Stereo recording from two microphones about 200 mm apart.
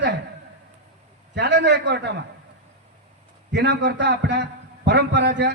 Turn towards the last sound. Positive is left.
turn(degrees=-60)  # may be behind; listen again after turning